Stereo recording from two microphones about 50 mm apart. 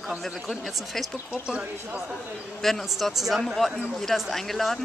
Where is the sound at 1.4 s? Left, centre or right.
Centre.